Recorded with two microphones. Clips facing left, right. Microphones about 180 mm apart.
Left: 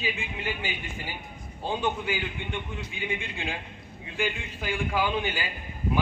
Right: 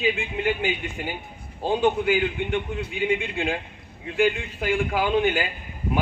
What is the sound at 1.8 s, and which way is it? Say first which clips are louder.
A man's voice: right 10 dB; 60° right (ahead or behind).